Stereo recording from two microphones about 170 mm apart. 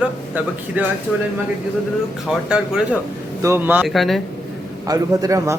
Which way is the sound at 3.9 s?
Centre (ahead or behind).